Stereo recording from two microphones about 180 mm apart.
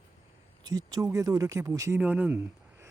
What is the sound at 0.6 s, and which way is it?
Speech, 20° right (ahead or behind).